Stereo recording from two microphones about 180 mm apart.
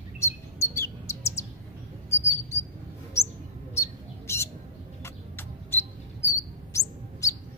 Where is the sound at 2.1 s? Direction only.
15° left (ahead or behind).